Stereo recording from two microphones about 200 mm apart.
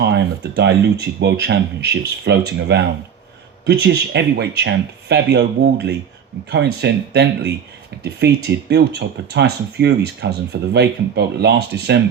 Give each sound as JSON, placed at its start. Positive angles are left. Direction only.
{"t": 0.0, "sound": "speech", "side_deg": -60}